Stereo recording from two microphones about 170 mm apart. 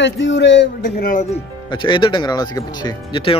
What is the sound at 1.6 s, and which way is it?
Speech, 25° left (ahead or behind).